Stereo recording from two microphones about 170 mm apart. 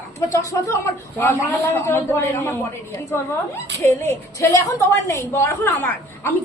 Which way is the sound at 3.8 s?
15° left (ahead or behind).